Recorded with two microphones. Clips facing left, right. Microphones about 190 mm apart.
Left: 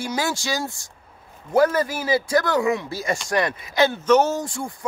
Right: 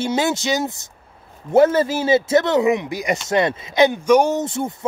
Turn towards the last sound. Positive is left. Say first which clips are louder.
# right 6 dB
turn(degrees=-20)  # may be behind; listen again after turning